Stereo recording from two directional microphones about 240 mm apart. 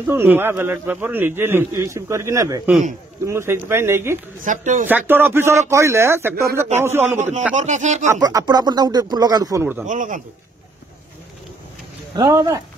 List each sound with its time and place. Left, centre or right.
0.0 s a man's voice: centre
4.5 s speech: right
4.8 s a man's voice: centre
7.2 s speech: right
8.1 s a man's voice: centre
9.8 s speech: right
12.2 s a man's voice: centre